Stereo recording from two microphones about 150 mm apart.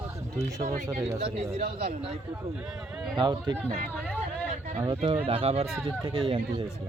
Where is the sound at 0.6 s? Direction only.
60° right (ahead or behind).